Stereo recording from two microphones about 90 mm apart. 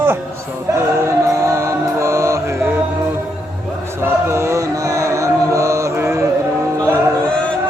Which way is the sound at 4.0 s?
30° right (ahead or behind).